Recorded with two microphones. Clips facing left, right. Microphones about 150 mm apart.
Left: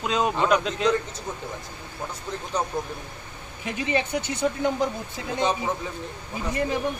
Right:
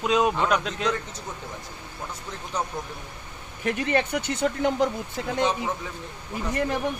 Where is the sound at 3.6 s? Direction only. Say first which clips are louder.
Right 2 dB; 55° right (ahead or behind).